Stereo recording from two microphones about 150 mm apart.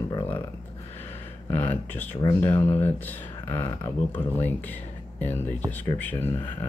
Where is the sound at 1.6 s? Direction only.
10° left (ahead or behind).